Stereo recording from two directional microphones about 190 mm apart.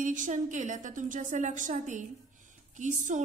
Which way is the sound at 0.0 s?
40° right (ahead or behind).